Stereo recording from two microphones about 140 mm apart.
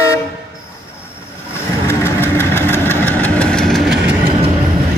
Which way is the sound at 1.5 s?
20° left (ahead or behind).